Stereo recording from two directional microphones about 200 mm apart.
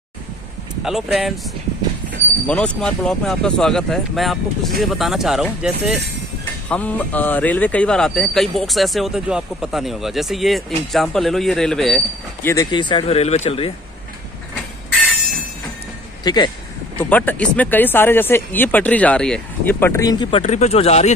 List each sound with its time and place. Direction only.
0.8 s speech: centre (ahead or behind)
6.7 s speech: 10° left (ahead or behind)
12.4 s speech: 20° left (ahead or behind)
16.3 s speech: 20° left (ahead or behind)
17.0 s speech: 10° left (ahead or behind); by 21.1 s 30° left (ahead or behind)